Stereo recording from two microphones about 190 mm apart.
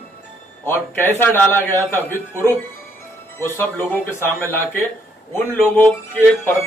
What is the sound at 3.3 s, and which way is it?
A man's voice, 10° left (ahead or behind).